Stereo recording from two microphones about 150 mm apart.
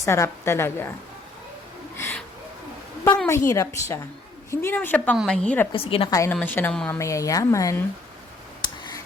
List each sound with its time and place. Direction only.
0.0 s a woman's voice: 20° left (ahead or behind)
2.0 s a sound: 15° left (ahead or behind)
3.2 s a woman's voice: 20° left (ahead or behind)
5.7 s a woman's voice: 40° left (ahead or behind)
6.1 s a woman's voice: 20° left (ahead or behind)
7.0 s speech: 20° left (ahead or behind)
8.6 s finger snapping: 30° left (ahead or behind)